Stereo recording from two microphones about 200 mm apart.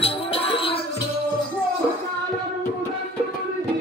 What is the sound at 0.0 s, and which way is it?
Music, 30° left (ahead or behind).